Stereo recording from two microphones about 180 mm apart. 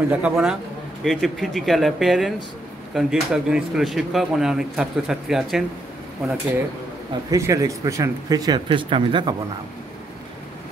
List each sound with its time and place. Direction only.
0.1 s a man's voice: 10° right (ahead or behind)
7.2 s speech: 20° right (ahead or behind)